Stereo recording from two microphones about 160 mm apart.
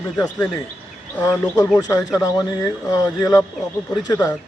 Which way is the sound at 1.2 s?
15° left (ahead or behind).